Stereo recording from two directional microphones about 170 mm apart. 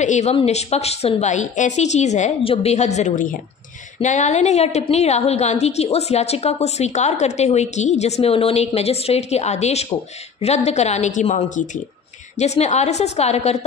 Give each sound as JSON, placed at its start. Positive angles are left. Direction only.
{"t": 0.0, "sound": "a woman's voice", "side_deg": 45}